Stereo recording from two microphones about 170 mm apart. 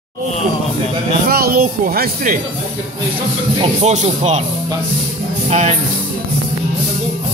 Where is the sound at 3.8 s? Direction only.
40° right (ahead or behind).